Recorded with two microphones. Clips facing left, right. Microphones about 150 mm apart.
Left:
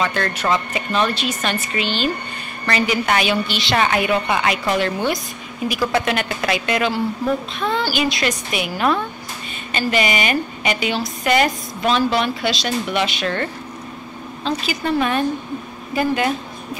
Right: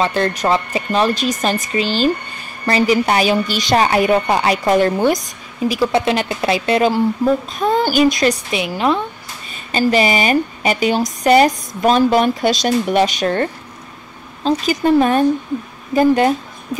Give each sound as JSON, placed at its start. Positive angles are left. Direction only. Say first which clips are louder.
{"t": 0.0, "sound": "a woman's voice", "louder": "right 4 dB", "side_deg": -30}
{"t": 5.7, "sound": "a woman's voice", "louder": "right 4 dB", "side_deg": -25}
{"t": 8.5, "sound": "a woman's voice", "louder": "right 2 dB", "side_deg": -25}
{"t": 9.7, "sound": "a woman's voice", "louder": "right 5 dB", "side_deg": -35}